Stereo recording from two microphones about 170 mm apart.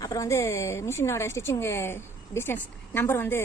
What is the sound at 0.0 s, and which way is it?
Speech, 20° left (ahead or behind).